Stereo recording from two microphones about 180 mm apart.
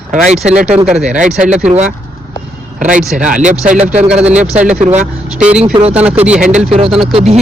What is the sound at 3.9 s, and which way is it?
Speech, 5° right (ahead or behind).